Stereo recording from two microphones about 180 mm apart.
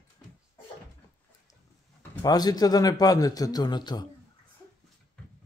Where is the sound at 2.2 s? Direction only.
20° left (ahead or behind).